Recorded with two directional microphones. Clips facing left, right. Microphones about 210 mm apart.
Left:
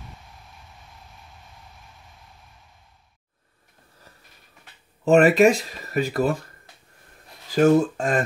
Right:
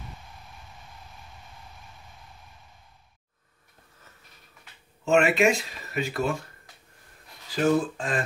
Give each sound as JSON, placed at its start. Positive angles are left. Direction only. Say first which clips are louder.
{"t": 5.0, "sound": "speech", "louder": "left 6 dB", "side_deg": 40}